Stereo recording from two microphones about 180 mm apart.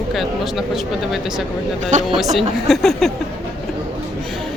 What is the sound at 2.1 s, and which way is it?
Speech, centre (ahead or behind).